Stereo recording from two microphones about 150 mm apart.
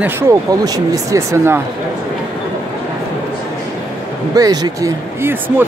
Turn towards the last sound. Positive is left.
turn(degrees=-15)  # may be behind; listen again after turning